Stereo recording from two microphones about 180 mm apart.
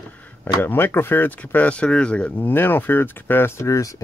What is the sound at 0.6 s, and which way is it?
Speech, 10° left (ahead or behind).